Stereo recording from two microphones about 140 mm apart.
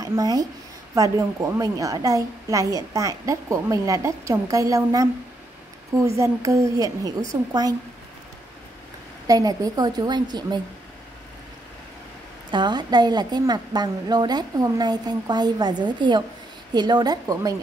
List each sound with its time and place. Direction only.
0.0 s a woman's voice: 25° right (ahead or behind)
9.3 s a woman's voice: 25° right (ahead or behind)
12.4 s a woman's voice: 35° right (ahead or behind)